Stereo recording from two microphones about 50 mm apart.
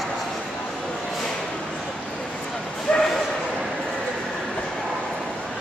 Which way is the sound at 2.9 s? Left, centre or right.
Centre.